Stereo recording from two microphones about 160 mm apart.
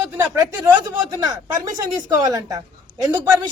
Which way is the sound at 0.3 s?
20° right (ahead or behind).